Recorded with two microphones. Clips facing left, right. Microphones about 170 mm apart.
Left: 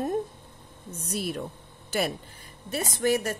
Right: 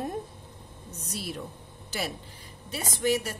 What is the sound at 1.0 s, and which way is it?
A woman's voice, 55° left (ahead or behind).